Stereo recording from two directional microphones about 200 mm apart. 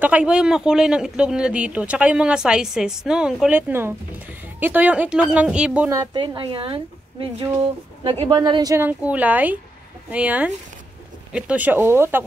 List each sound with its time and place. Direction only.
0.0 s speech: 5° right (ahead or behind)
5.8 s a woman's voice: 15° right (ahead or behind)